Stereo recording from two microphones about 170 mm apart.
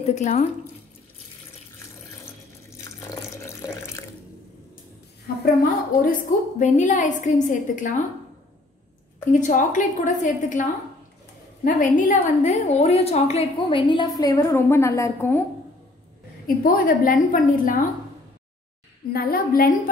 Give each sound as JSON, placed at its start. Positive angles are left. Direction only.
{"t": 0.0, "sound": "a woman's voice", "side_deg": 45}
{"t": 2.8, "sound": "water tap", "side_deg": 15}
{"t": 5.4, "sound": "a woman's voice", "side_deg": 60}
{"t": 6.6, "sound": "a woman's voice", "side_deg": 50}
{"t": 9.3, "sound": "a woman's voice", "side_deg": 50}
{"t": 16.4, "sound": "a woman's voice", "side_deg": 55}
{"t": 19.1, "sound": "a woman's voice", "side_deg": 60}